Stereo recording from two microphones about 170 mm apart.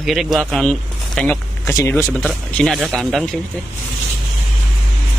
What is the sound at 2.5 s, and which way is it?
Speech, centre (ahead or behind).